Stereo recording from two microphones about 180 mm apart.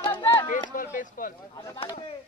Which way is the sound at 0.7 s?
50° left (ahead or behind).